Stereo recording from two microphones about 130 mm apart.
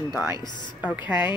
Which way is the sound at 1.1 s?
35° left (ahead or behind).